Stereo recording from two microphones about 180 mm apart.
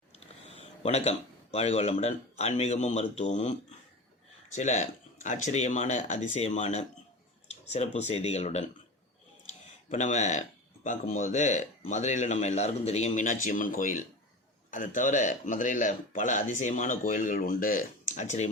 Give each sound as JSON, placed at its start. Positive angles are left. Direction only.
{"t": 0.2, "sound": "speech", "side_deg": 35}
{"t": 9.5, "sound": "a sound", "side_deg": 40}
{"t": 10.8, "sound": "speech", "side_deg": 40}